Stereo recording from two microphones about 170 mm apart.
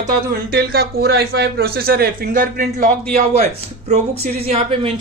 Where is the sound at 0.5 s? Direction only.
70° right (ahead or behind).